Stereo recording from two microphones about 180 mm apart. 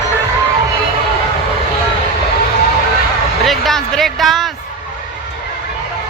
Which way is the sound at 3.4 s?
Centre (ahead or behind).